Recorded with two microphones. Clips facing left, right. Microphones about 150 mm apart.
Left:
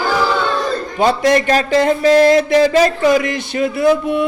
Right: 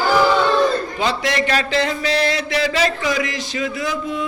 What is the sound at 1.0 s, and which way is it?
Speech, 45° left (ahead or behind).